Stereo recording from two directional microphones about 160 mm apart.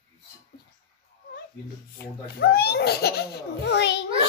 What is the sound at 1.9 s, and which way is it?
Speech, 75° left (ahead or behind).